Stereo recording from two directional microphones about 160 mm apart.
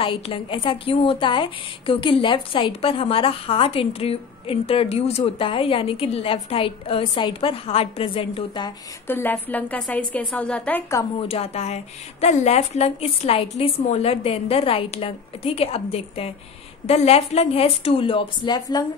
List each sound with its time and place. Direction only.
0.0 s a woman's voice: 35° left (ahead or behind)
9.0 s a woman's voice: 10° left (ahead or behind)
11.1 s a woman's voice: 40° left (ahead or behind)